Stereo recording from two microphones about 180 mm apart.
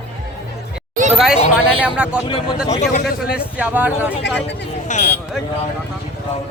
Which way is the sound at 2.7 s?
40° left (ahead or behind).